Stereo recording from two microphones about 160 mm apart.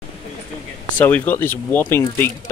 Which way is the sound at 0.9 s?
10° left (ahead or behind).